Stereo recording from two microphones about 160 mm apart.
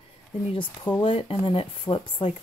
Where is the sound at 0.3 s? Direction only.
30° left (ahead or behind).